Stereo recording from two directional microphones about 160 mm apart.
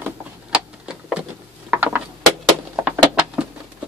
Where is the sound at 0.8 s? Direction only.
5° right (ahead or behind).